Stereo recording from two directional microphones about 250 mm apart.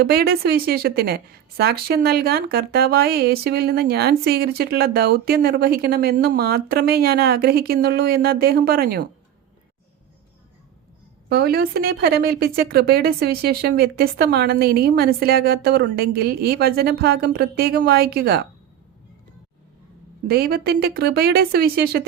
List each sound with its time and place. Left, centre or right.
0.0 s a woman's voice: right
11.3 s a woman's voice: right
20.2 s a woman's voice: right